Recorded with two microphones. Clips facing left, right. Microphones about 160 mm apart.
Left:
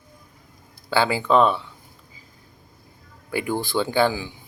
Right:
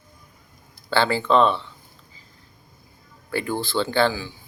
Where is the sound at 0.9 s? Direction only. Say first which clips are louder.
Even; 10° left (ahead or behind).